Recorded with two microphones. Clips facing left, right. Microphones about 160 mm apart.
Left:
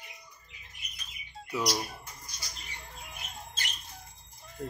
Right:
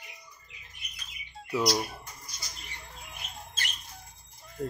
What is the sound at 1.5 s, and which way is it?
Speech, 10° right (ahead or behind).